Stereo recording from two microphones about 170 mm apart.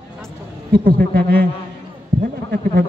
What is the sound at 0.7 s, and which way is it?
Speech, 55° right (ahead or behind).